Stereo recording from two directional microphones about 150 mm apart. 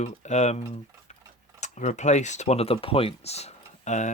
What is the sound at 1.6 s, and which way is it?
Speech, 55° left (ahead or behind).